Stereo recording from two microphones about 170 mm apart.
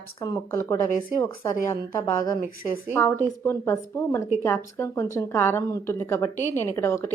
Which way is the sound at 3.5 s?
15° left (ahead or behind).